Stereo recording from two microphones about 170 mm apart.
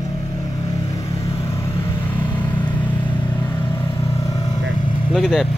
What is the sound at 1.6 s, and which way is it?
Vehicle, 15° left (ahead or behind).